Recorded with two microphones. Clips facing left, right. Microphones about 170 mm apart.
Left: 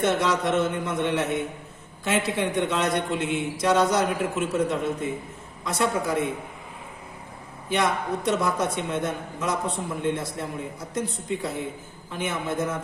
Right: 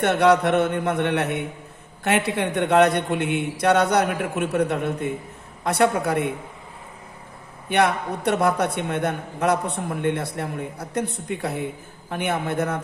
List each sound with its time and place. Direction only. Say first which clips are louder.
0.0 s a man's voice: right 5 dB; 65° right (ahead or behind)
7.7 s a man's voice: right 4 dB; 65° right (ahead or behind)